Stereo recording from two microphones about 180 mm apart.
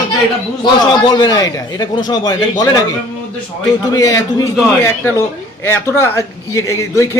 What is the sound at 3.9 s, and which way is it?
A man's voice, 20° left (ahead or behind).